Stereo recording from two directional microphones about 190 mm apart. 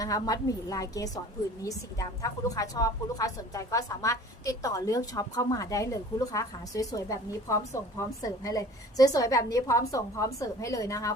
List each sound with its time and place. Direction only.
0.0 s a woman's voice: 20° left (ahead or behind)